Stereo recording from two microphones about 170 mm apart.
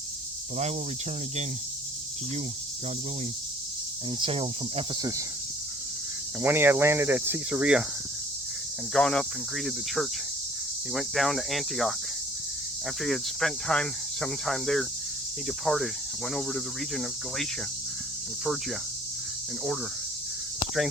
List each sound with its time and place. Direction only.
4.2 s speech: 35° right (ahead or behind)
6.4 s speech: 10° right (ahead or behind)
8.9 s cricket: 5° left (ahead or behind)
13.0 s cricket: centre (ahead or behind)